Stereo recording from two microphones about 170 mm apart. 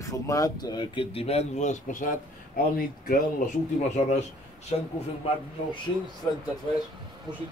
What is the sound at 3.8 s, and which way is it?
Speech, 40° left (ahead or behind).